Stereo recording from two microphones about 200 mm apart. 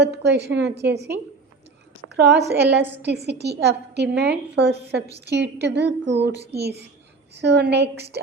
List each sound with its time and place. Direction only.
0.0 s a woman's voice: 55° right (ahead or behind)